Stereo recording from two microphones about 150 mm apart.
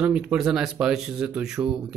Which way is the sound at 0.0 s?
5° right (ahead or behind).